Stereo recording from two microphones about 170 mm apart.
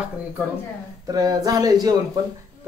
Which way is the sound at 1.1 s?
20° right (ahead or behind).